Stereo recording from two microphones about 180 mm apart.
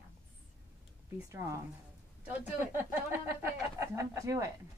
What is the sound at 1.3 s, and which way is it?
Speech, 15° right (ahead or behind).